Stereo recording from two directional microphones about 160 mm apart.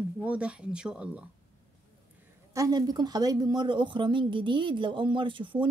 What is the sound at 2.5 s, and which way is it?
Speech, 25° right (ahead or behind).